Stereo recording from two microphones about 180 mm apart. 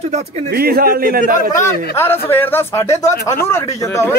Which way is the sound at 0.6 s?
55° right (ahead or behind).